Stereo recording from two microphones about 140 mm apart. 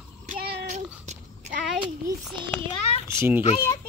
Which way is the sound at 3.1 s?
20° right (ahead or behind).